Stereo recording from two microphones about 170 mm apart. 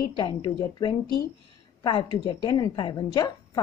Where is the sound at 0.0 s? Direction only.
25° left (ahead or behind).